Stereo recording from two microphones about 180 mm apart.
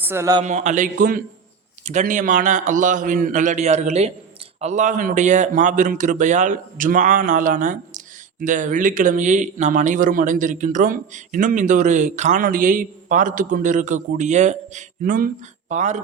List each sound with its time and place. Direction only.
0.0 s speech: 15° right (ahead or behind)
0.4 s a man's voice: 40° right (ahead or behind)